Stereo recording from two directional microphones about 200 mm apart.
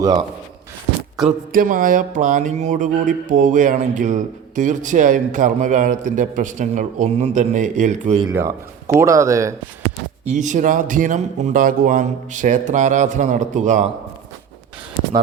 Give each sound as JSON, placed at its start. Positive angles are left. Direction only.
{"t": 0.0, "sound": "speech", "side_deg": -20}
{"t": 1.5, "sound": "speech", "side_deg": -40}
{"t": 8.3, "sound": "speech", "side_deg": -15}
{"t": 10.2, "sound": "speech", "side_deg": -40}